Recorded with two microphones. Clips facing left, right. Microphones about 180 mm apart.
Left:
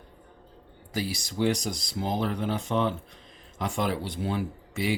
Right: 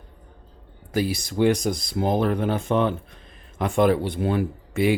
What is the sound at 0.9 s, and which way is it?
Speech, 55° right (ahead or behind).